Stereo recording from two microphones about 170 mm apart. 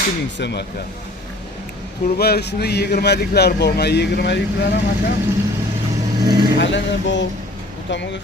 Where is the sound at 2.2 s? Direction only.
70° left (ahead or behind).